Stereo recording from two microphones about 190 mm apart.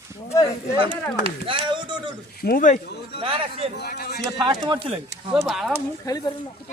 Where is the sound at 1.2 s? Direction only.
25° right (ahead or behind).